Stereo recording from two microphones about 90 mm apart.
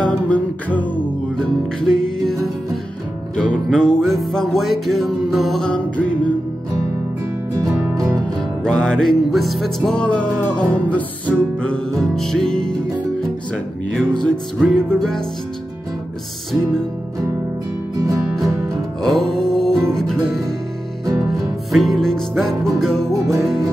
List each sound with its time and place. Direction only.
0.0 s music: 15° left (ahead or behind)
1.8 s music: 5° left (ahead or behind)
8.6 s music: 10° left (ahead or behind)
13.9 s music: 10° left (ahead or behind)
17.9 s music: 40° right (ahead or behind)
19.0 s music: 5° left (ahead or behind)
21.7 s music: 5° left (ahead or behind)
23.1 s music: 30° right (ahead or behind)